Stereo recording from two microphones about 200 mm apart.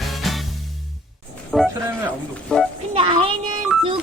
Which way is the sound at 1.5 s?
Centre (ahead or behind).